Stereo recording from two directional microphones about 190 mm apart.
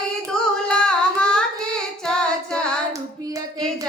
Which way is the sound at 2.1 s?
5° left (ahead or behind).